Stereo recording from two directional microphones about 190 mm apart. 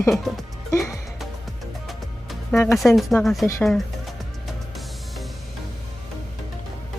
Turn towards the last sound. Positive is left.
turn(degrees=0)  # may be behind; listen again after turning